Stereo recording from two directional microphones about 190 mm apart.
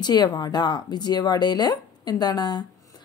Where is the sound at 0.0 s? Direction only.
20° left (ahead or behind).